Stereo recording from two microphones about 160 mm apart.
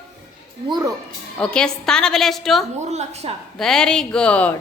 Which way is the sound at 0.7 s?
25° right (ahead or behind).